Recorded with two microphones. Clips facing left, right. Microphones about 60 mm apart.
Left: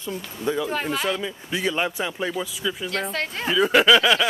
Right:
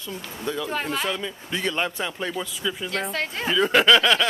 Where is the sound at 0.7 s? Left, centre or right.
Centre.